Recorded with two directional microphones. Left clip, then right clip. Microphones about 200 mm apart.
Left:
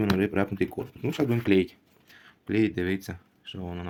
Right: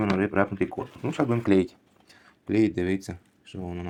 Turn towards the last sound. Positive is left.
turn(degrees=10)  # may be behind; listen again after turning